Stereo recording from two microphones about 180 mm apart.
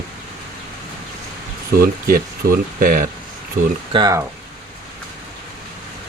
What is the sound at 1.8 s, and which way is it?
Speech, 55° right (ahead or behind).